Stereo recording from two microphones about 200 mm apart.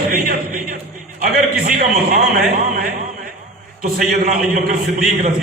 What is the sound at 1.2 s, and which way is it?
A man's voice, 45° right (ahead or behind).